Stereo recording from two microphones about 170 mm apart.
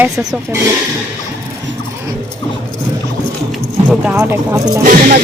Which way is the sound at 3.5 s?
5° right (ahead or behind).